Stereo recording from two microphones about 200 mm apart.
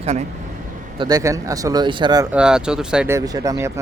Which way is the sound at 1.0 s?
20° right (ahead or behind).